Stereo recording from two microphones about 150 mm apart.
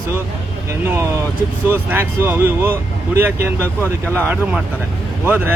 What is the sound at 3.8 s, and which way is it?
Speech, 10° left (ahead or behind).